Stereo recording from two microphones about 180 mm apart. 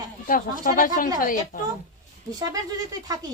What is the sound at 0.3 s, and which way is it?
Speech, 50° left (ahead or behind).